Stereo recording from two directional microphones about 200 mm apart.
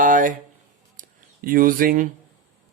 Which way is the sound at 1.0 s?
45° right (ahead or behind).